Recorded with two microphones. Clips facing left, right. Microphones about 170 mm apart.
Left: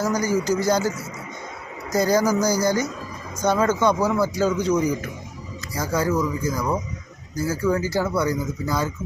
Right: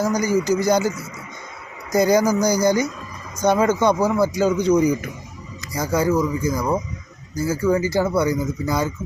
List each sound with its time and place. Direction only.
0.0 s speech: 15° right (ahead or behind)